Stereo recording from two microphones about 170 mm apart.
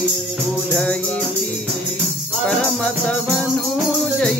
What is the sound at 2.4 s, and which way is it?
Music, 5° left (ahead or behind).